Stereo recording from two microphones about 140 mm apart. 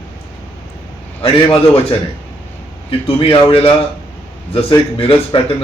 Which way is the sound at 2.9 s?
40° left (ahead or behind).